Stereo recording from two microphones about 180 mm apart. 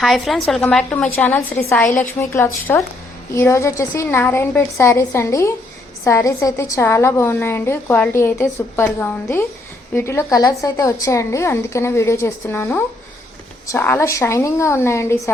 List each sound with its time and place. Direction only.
0.0 s a woman's voice: centre (ahead or behind)